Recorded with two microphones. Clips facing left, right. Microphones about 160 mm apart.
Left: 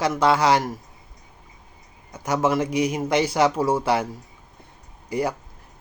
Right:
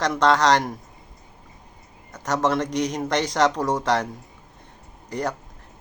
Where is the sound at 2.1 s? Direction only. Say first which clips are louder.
Left 1 dB; 10° left (ahead or behind).